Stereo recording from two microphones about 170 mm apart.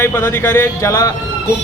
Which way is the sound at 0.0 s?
15° left (ahead or behind).